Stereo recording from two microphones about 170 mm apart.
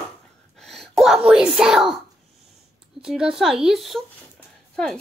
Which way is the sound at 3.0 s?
5° right (ahead or behind).